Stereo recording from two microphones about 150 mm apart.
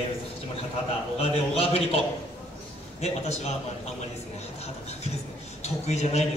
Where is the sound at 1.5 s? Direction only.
40° left (ahead or behind).